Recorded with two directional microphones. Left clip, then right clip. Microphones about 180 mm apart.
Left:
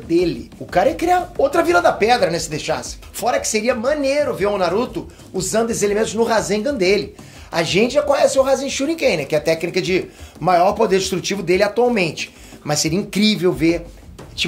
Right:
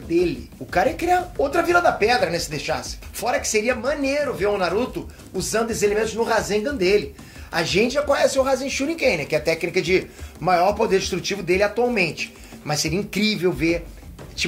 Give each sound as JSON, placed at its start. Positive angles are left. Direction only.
{"t": 0.1, "sound": "speech", "side_deg": 55}
{"t": 7.5, "sound": "speech", "side_deg": 50}
{"t": 7.9, "sound": "speech", "side_deg": 20}
{"t": 10.4, "sound": "speech", "side_deg": 25}
{"t": 10.8, "sound": "speech", "side_deg": 40}